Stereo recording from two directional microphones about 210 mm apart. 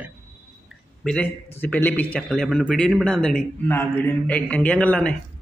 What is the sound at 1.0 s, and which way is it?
A man's voice, 5° left (ahead or behind).